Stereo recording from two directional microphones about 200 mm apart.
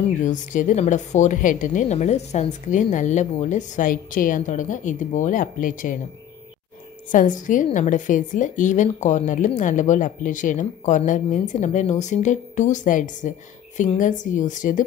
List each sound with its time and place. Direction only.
0.2 s a woman's voice: 40° left (ahead or behind)
7.1 s a woman's voice: 40° left (ahead or behind)